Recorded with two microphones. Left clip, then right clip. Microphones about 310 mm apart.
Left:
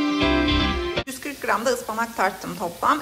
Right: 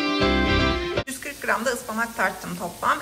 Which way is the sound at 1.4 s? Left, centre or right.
Centre.